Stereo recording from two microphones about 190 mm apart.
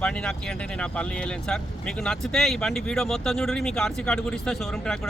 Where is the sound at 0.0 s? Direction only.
5° left (ahead or behind).